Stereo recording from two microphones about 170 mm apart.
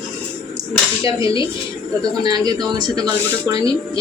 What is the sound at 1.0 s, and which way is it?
Speech, 30° left (ahead or behind).